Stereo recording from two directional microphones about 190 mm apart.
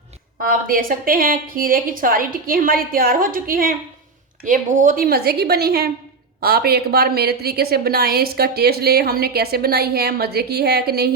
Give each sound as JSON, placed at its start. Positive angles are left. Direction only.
{"t": 0.4, "sound": "a woman's voice", "side_deg": -50}